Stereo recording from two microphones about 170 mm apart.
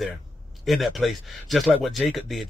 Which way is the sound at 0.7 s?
Centre (ahead or behind).